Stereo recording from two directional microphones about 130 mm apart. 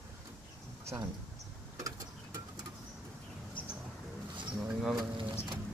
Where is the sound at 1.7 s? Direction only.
25° right (ahead or behind).